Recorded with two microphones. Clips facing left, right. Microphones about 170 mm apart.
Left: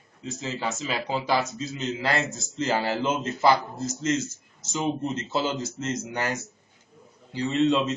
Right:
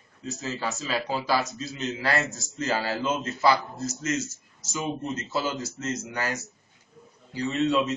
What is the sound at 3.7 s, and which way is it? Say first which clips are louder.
A man's voice: left 3 dB; 55° left (ahead or behind).